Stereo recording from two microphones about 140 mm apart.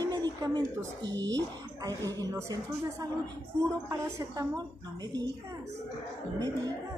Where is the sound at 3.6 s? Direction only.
25° right (ahead or behind).